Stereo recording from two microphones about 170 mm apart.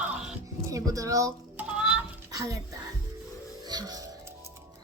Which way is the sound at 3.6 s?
25° right (ahead or behind).